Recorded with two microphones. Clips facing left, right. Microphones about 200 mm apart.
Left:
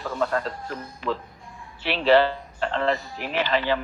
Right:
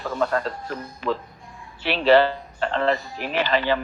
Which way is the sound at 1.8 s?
45° right (ahead or behind).